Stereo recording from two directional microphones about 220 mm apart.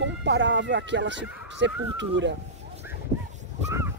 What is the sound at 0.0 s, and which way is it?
Speech, 55° right (ahead or behind).